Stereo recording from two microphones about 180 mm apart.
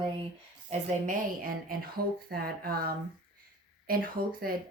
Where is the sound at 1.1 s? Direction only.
55° right (ahead or behind).